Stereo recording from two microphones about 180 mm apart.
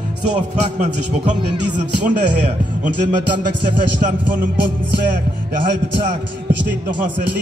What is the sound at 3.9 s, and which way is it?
Music, 50° right (ahead or behind).